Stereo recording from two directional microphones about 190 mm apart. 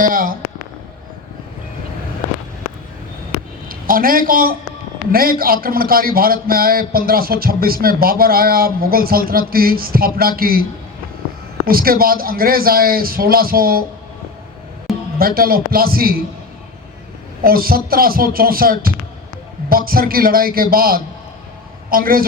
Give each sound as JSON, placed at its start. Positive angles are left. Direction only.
{"t": 0.0, "sound": "speech", "side_deg": -45}
{"t": 3.7, "sound": "a man's voice", "side_deg": -50}
{"t": 15.2, "sound": "a man's voice", "side_deg": -50}
{"t": 17.4, "sound": "a man's voice", "side_deg": -50}